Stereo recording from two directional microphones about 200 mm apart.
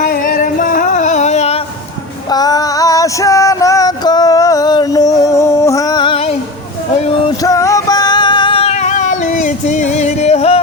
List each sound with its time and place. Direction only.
0.0 s music: 40° left (ahead or behind)
2.3 s female singing: 20° left (ahead or behind)
7.4 s music: 15° left (ahead or behind); by 10.6 s 30° left (ahead or behind)